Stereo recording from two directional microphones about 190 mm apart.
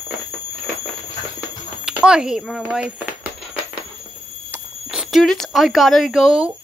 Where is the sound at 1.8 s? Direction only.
5° right (ahead or behind).